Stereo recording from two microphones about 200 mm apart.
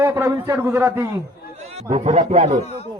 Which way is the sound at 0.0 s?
15° right (ahead or behind).